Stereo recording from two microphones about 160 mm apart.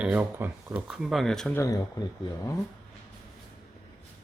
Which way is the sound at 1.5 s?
20° left (ahead or behind).